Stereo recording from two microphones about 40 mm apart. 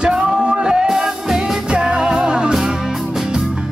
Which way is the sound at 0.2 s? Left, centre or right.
Right.